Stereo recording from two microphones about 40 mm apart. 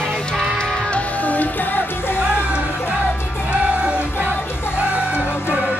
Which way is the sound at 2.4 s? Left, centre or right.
Right.